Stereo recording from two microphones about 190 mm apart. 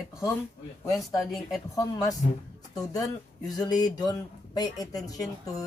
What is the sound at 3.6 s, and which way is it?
Speech, 20° left (ahead or behind).